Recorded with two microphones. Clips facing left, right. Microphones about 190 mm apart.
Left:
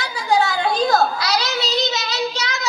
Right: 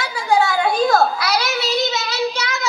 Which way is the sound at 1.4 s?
20° left (ahead or behind).